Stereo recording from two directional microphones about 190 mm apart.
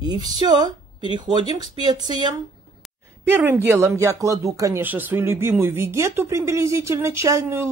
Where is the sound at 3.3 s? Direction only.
10° right (ahead or behind).